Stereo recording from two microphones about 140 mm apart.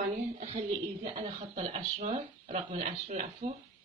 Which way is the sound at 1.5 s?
60° right (ahead or behind).